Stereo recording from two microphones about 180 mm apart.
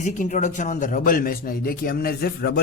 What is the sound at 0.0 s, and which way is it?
A man's voice, 45° left (ahead or behind).